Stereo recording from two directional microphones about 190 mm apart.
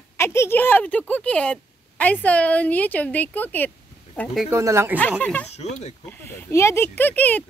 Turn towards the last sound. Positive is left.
turn(degrees=10)  # may be behind; listen again after turning